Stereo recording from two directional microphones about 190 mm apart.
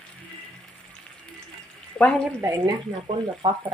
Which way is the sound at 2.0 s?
5° left (ahead or behind).